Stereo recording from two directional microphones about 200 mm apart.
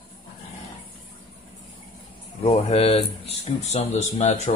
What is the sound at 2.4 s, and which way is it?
Speech, 30° left (ahead or behind).